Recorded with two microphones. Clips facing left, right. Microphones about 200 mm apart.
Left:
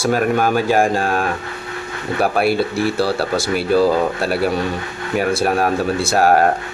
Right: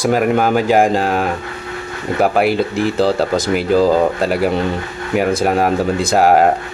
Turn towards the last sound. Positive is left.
turn(degrees=-15)  # may be behind; listen again after turning